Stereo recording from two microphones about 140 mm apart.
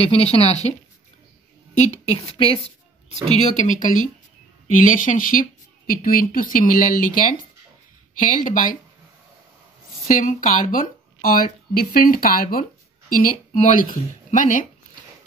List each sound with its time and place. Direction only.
0.0 s speech: 45° left (ahead or behind)
1.8 s speech: 55° left (ahead or behind)
2.2 s a woman's voice: 40° left (ahead or behind)
3.1 s speech: 60° left (ahead or behind); by 8.7 s 75° left (ahead or behind)
10.0 s speech: 75° left (ahead or behind); by 12.6 s 90° left
13.8 s speech: 75° left (ahead or behind)